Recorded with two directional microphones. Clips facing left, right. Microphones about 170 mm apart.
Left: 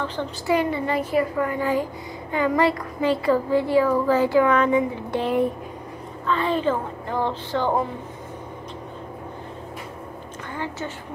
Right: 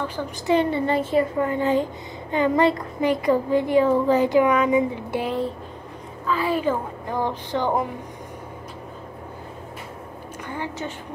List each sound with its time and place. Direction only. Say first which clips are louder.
0.0 s a woman's voice: left 1 dB; 10° right (ahead or behind)
0.5 s a child's voice: right 2 dB; 30° right (ahead or behind)
10.5 s a woman's voice: even; 15° right (ahead or behind)